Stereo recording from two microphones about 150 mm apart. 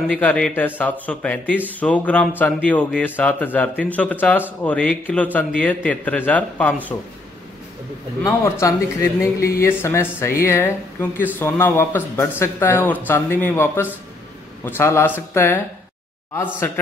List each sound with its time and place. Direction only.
0.1 s speech: 10° left (ahead or behind)
8.2 s speech: 20° left (ahead or behind)